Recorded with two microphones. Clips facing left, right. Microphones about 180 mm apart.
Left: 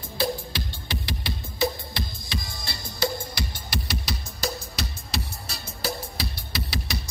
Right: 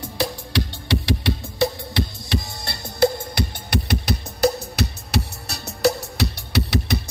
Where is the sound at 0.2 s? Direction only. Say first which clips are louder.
Right 3 dB; 75° right (ahead or behind).